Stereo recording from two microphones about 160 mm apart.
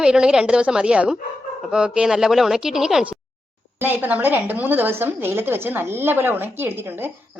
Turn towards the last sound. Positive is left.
turn(degrees=-15)  # may be behind; listen again after turning